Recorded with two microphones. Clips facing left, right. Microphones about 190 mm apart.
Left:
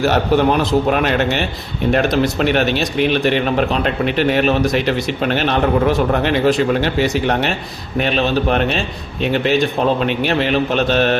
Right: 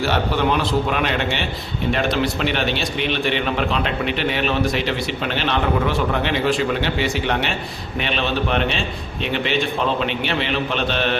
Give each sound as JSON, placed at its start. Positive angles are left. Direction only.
{"t": 0.0, "sound": "a man's voice", "side_deg": 45}